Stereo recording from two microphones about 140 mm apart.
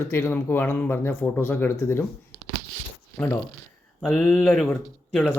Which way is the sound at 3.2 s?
15° left (ahead or behind).